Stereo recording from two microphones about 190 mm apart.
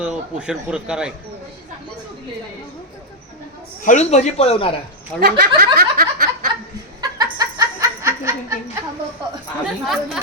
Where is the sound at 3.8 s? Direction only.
35° left (ahead or behind).